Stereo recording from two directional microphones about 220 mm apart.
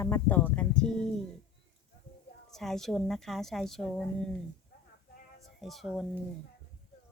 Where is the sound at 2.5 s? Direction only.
Centre (ahead or behind).